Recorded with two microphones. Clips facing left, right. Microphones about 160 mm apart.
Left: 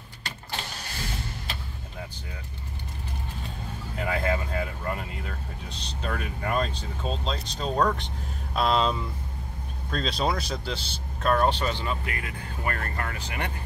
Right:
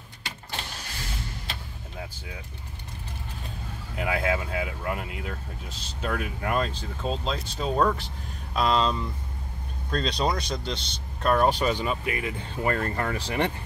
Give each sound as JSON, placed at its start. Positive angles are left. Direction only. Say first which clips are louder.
{"t": 3.9, "sound": "speech", "louder": "right 1 dB", "side_deg": -5}
{"t": 11.3, "sound": "speech", "louder": "right 3 dB", "side_deg": -10}